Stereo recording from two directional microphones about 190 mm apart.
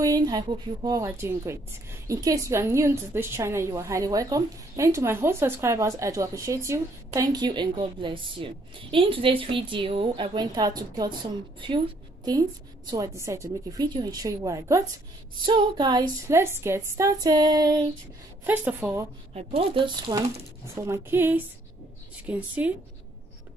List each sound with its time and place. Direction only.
0.0 s a woman's voice: 20° right (ahead or behind)
18.4 s a woman's voice: 10° right (ahead or behind)
19.3 s a woman's voice: 30° right (ahead or behind); by 22.4 s 10° right (ahead or behind)